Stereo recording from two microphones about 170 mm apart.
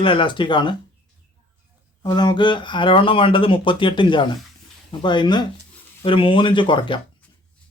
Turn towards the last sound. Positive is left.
turn(degrees=30)  # may be behind; listen again after turning